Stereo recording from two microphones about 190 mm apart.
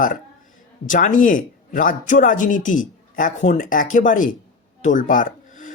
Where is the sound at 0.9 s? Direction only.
45° left (ahead or behind).